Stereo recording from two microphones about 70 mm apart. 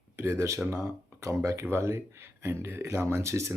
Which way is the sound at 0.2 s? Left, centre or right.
Right.